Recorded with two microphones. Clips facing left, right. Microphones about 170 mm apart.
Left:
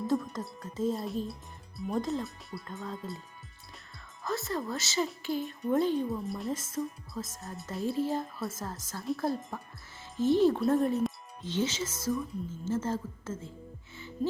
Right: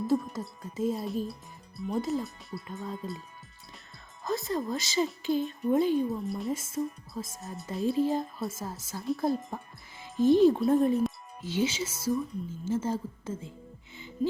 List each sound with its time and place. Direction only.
0.1 s speech: 10° right (ahead or behind)
2.8 s a woman's voice: 15° right (ahead or behind)
4.2 s a woman's voice: 15° right (ahead or behind)
6.1 s a woman's voice: centre (ahead or behind)
7.4 s speech: centre (ahead or behind)
7.8 s a woman's voice: 20° right (ahead or behind)
10.0 s a woman's voice: 15° right (ahead or behind)